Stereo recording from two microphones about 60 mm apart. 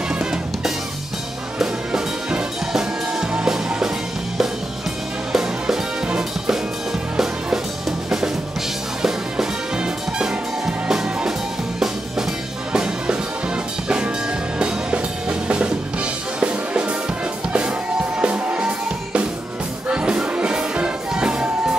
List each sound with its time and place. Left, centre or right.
0.1 s drum kit: centre
1.6 s music: centre
5.3 s music: centre
9.0 s music: centre
12.7 s music: centre